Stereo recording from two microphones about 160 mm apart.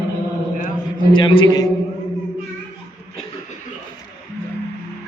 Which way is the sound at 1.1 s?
30° left (ahead or behind).